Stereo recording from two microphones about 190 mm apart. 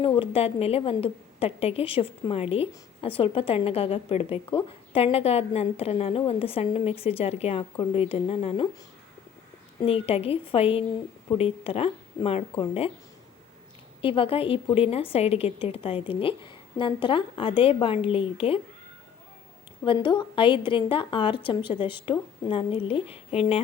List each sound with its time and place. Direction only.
0.2 s a woman's voice: 30° left (ahead or behind)
9.8 s a woman's voice: 30° left (ahead or behind)
14.0 s a woman's voice: 30° left (ahead or behind)
19.8 s a woman's voice: 25° left (ahead or behind)